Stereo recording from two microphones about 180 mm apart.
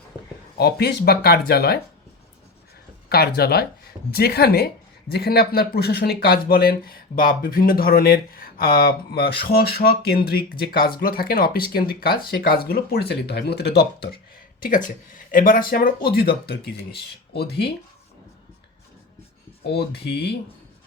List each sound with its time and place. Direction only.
0.6 s speech: 65° left (ahead or behind)
3.1 s speech: 60° left (ahead or behind)
14.6 s speech: 50° left (ahead or behind); by 17.7 s 65° left (ahead or behind)
19.6 s speech: 65° left (ahead or behind)